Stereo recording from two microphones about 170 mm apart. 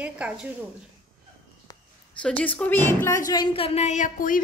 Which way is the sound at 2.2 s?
5° left (ahead or behind).